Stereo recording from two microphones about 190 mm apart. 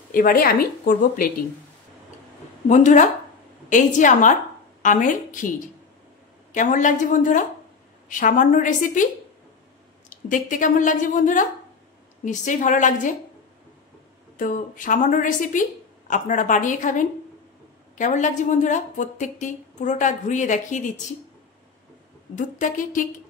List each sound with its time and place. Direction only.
0.1 s speech: 50° left (ahead or behind)
2.7 s a woman's voice: 40° left (ahead or behind)
14.3 s a woman's voice: 45° left (ahead or behind)
22.3 s speech: 45° left (ahead or behind)